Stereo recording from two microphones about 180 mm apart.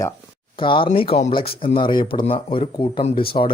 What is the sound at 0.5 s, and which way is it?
Speech, 30° left (ahead or behind).